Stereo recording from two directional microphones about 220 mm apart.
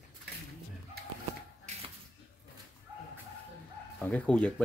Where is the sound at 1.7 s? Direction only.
30° right (ahead or behind).